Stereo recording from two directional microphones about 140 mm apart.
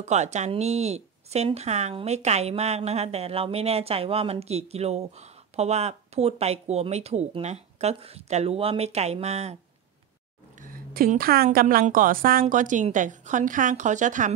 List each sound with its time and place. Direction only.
0.0 s speech: 55° right (ahead or behind)
10.6 s a woman's voice: 80° right; by 14.3 s 65° right (ahead or behind)